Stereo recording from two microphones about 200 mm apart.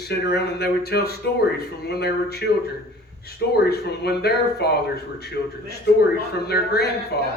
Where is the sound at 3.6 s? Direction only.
55° left (ahead or behind).